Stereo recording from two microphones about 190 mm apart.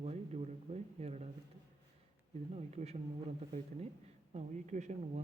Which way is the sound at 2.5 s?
35° right (ahead or behind).